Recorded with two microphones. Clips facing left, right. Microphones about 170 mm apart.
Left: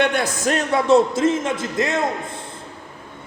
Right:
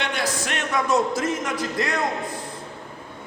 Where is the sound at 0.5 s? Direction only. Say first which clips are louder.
Left 7 dB; 30° left (ahead or behind).